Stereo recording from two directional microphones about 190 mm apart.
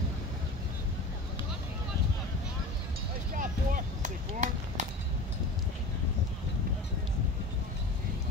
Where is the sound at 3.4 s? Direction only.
45° right (ahead or behind).